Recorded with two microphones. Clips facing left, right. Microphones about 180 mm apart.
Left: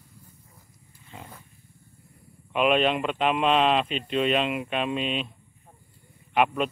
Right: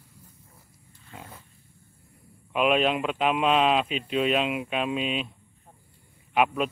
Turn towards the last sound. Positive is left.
turn(degrees=-5)  # may be behind; listen again after turning